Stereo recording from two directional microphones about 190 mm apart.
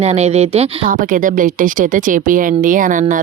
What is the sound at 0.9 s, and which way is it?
A woman's voice, 45° right (ahead or behind).